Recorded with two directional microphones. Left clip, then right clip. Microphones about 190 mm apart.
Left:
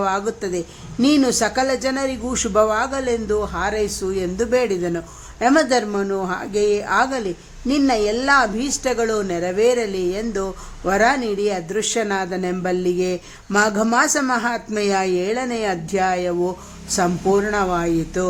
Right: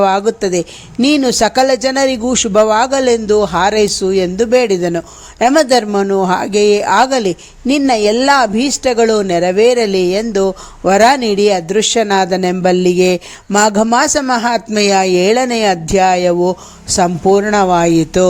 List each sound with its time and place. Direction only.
0.0 s speech: 30° right (ahead or behind)